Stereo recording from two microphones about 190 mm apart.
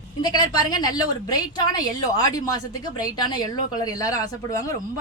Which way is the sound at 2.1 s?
20° left (ahead or behind).